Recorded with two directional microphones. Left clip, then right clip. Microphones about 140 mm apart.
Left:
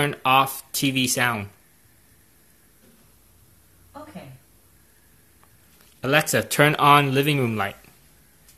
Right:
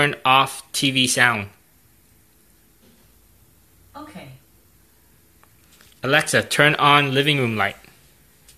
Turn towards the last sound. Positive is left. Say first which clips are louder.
# right 4 dB
turn(degrees=5)  # may be behind; listen again after turning